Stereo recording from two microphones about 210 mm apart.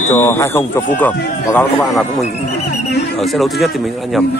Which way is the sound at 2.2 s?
30° left (ahead or behind).